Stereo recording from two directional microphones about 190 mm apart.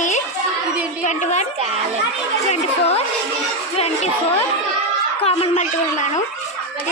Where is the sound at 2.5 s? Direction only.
35° left (ahead or behind).